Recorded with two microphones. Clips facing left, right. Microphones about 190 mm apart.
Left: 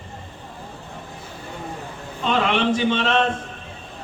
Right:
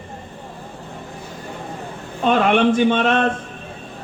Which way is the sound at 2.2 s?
50° right (ahead or behind).